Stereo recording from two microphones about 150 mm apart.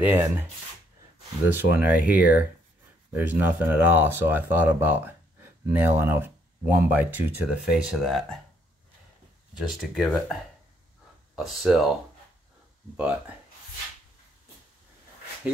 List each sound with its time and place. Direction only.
0.0 s speech: 15° right (ahead or behind)
1.5 s speech: 10° right (ahead or behind)
9.6 s speech: centre (ahead or behind)
11.3 s speech: centre (ahead or behind)